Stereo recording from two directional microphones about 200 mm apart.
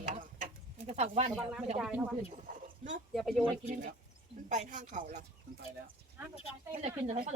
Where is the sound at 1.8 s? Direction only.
5° right (ahead or behind).